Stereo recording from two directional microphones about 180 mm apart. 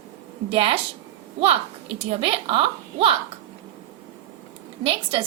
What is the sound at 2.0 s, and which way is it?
A woman's voice, 30° right (ahead or behind).